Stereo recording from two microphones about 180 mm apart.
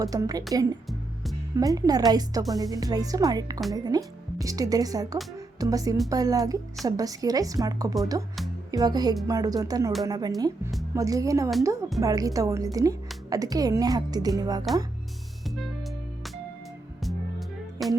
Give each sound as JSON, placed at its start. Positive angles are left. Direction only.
{"t": 0.0, "sound": "speech", "side_deg": -20}
{"t": 0.9, "sound": "music", "side_deg": 0}
{"t": 1.5, "sound": "a woman's voice", "side_deg": -20}
{"t": 15.4, "sound": "music", "side_deg": 0}